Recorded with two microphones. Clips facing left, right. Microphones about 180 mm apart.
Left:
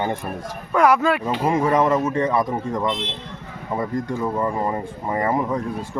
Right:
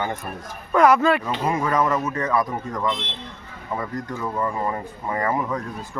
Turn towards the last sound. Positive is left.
turn(degrees=25)  # may be behind; listen again after turning